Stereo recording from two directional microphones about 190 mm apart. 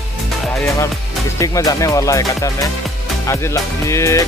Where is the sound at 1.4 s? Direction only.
15° left (ahead or behind).